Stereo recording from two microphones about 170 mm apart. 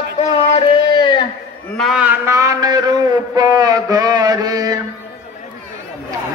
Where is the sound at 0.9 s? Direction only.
30° left (ahead or behind).